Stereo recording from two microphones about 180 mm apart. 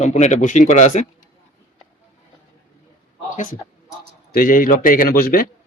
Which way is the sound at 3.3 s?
45° left (ahead or behind).